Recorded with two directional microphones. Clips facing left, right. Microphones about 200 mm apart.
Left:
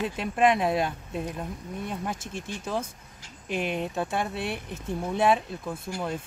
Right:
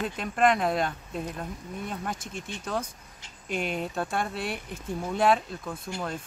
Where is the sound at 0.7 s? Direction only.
5° left (ahead or behind).